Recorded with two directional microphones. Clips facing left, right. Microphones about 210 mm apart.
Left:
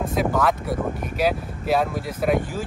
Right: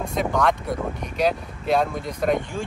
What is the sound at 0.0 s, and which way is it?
Speech, 5° left (ahead or behind).